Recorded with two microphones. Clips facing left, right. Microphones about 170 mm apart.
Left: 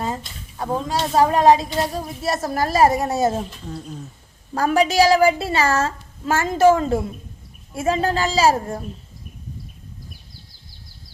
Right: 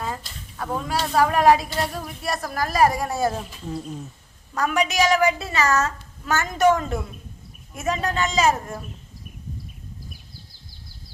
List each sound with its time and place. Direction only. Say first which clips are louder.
0.5 s speech: left 3 dB; 25° left (ahead or behind)
3.5 s speech: right 2 dB; centre (ahead or behind)
4.5 s a woman's voice: left 5 dB; 30° left (ahead or behind)